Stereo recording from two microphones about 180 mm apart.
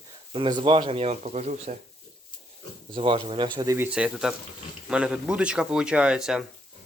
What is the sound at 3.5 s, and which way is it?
Speech, 15° right (ahead or behind).